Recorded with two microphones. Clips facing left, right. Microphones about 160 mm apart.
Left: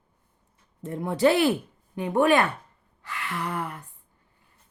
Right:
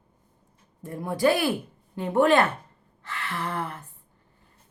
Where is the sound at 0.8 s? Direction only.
20° left (ahead or behind).